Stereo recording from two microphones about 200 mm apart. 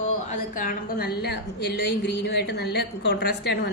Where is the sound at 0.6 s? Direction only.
45° left (ahead or behind).